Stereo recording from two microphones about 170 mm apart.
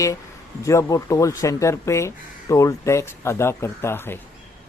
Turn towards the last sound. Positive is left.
turn(degrees=15)  # may be behind; listen again after turning